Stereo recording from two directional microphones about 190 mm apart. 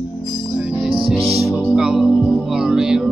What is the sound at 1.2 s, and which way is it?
Music, 30° right (ahead or behind).